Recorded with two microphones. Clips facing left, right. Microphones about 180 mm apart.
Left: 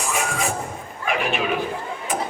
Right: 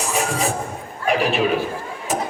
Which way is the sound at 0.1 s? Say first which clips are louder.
Right 2 dB; 35° right (ahead or behind).